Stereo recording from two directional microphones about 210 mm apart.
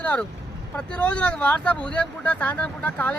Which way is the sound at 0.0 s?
5° left (ahead or behind).